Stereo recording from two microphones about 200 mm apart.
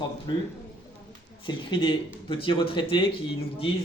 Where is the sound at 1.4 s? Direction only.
25° left (ahead or behind).